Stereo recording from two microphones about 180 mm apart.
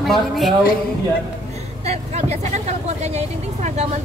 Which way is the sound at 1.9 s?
35° right (ahead or behind).